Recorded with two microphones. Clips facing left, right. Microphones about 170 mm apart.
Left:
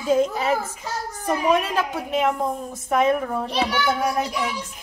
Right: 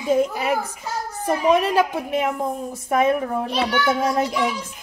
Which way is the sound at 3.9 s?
25° right (ahead or behind).